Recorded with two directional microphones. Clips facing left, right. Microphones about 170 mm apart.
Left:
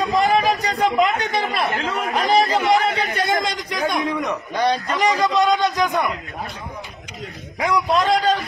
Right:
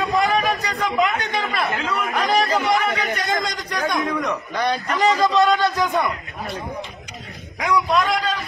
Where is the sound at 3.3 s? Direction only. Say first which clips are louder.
Left 2 dB; 20° left (ahead or behind).